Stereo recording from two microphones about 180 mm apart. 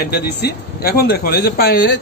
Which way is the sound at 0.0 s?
60° left (ahead or behind).